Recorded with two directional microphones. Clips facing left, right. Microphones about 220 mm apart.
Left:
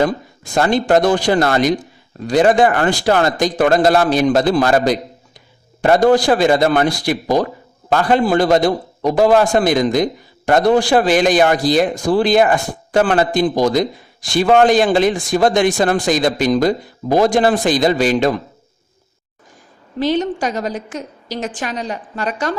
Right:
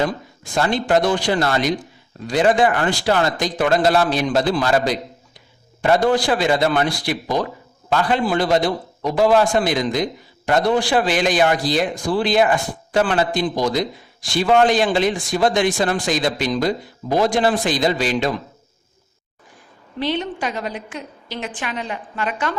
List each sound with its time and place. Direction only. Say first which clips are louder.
0.5 s a man's voice: left 4 dB; 45° left (ahead or behind)
20.0 s a woman's voice: left 6 dB; 40° left (ahead or behind)